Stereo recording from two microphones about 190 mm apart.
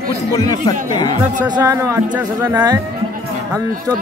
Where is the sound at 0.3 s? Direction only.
20° left (ahead or behind).